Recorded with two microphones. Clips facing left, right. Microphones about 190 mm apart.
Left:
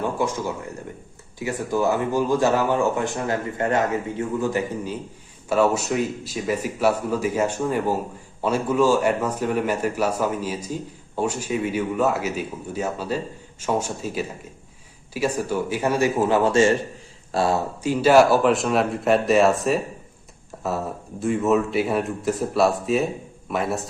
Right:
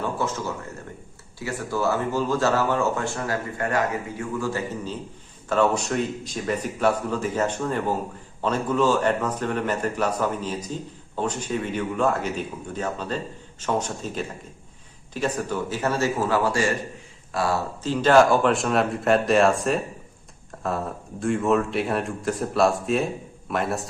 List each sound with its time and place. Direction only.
0.0 s speech: 15° left (ahead or behind)
17.8 s a man's voice: 10° left (ahead or behind)